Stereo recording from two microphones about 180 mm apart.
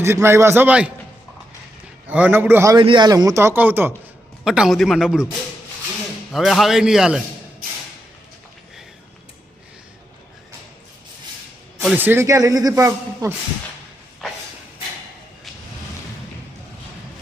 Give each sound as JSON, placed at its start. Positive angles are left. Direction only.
{"t": 0.0, "sound": "speech", "side_deg": -15}
{"t": 2.0, "sound": "speech", "side_deg": -10}
{"t": 2.7, "sound": "a man's voice", "side_deg": -25}
{"t": 6.3, "sound": "a man's voice", "side_deg": 0}
{"t": 7.6, "sound": "a sound", "side_deg": -50}
{"t": 11.9, "sound": "speech", "side_deg": -10}